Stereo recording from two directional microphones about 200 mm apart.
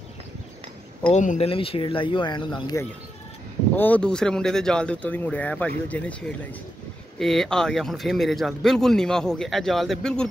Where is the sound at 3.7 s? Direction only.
10° left (ahead or behind).